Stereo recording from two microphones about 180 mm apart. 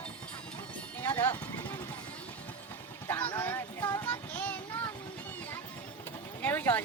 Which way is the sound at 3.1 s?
10° left (ahead or behind).